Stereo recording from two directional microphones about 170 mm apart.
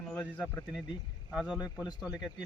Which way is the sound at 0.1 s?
10° left (ahead or behind).